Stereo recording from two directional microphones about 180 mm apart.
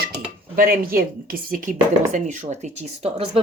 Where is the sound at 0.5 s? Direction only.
55° right (ahead or behind).